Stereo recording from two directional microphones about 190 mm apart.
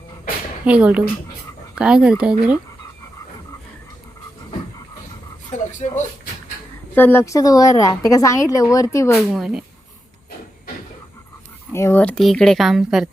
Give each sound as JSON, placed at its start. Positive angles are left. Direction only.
{"t": 0.6, "sound": "a woman's voice", "side_deg": -5}
{"t": 5.5, "sound": "a sound", "side_deg": 40}
{"t": 6.9, "sound": "a woman's voice", "side_deg": 10}
{"t": 9.3, "sound": "speech", "side_deg": 0}
{"t": 11.7, "sound": "speech", "side_deg": 15}